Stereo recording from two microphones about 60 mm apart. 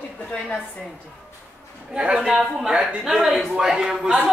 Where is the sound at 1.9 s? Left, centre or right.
Centre.